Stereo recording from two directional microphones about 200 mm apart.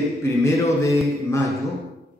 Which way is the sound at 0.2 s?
15° left (ahead or behind).